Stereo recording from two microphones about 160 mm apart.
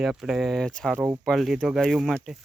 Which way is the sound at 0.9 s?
20° right (ahead or behind).